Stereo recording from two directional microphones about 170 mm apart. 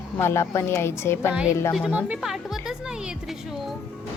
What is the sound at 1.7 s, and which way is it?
A woman's voice, 5° right (ahead or behind).